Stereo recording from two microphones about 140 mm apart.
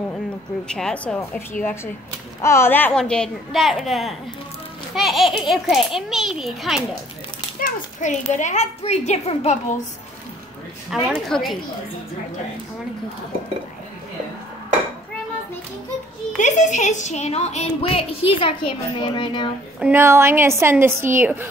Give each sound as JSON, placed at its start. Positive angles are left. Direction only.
{"t": 0.7, "sound": "a child's voice", "side_deg": 5}
{"t": 7.6, "sound": "a child's voice", "side_deg": 60}
{"t": 11.1, "sound": "a child's voice", "side_deg": 0}
{"t": 16.3, "sound": "a woman's voice", "side_deg": 60}
{"t": 19.8, "sound": "a woman's voice", "side_deg": -15}